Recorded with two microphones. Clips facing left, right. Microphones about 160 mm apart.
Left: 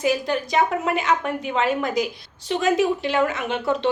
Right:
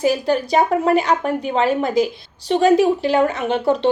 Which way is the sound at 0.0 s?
35° right (ahead or behind).